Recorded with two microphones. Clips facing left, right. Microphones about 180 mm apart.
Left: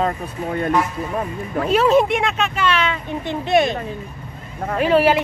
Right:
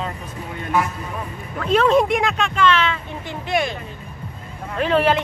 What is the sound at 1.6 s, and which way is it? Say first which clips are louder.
Speech: left 1 dB; 5° left (ahead or behind).